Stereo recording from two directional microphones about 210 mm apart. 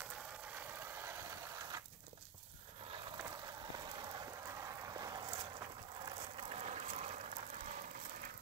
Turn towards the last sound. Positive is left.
turn(degrees=-35)  # may be behind; listen again after turning